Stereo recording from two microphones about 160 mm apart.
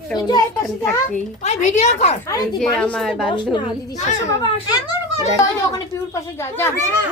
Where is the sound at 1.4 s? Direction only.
45° left (ahead or behind).